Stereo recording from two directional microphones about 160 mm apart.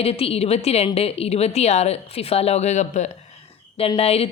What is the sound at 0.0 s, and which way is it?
A woman's voice, 40° left (ahead or behind).